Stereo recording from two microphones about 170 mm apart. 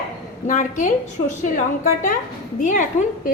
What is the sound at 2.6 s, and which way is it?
Speech, 50° left (ahead or behind).